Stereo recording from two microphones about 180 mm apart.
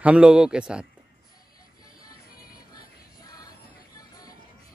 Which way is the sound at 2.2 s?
55° left (ahead or behind).